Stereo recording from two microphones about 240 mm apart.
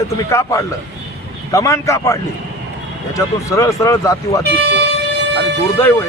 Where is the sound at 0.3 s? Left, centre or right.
Centre.